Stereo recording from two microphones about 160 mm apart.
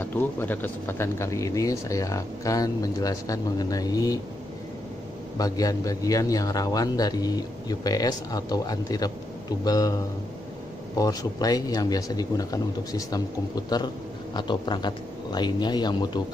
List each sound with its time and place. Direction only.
0.0 s speech: 10° left (ahead or behind)
5.4 s speech: 20° left (ahead or behind)
11.0 s speech: 25° left (ahead or behind)